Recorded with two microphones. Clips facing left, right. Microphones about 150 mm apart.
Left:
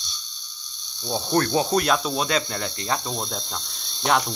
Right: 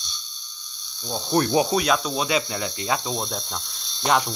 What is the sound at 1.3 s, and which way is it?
Speech, 15° right (ahead or behind).